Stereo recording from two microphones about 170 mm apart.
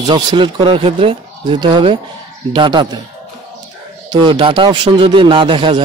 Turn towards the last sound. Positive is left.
turn(degrees=-30)  # may be behind; listen again after turning